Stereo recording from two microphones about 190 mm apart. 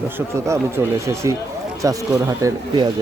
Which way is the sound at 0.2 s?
15° right (ahead or behind).